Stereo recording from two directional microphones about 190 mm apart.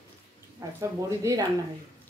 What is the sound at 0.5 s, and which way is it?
Speech, 15° right (ahead or behind).